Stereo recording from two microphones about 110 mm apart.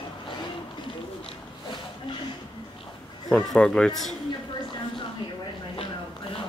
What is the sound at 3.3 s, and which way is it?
Speech, 5° left (ahead or behind).